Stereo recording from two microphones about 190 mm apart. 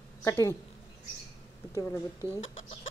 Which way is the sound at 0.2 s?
15° left (ahead or behind).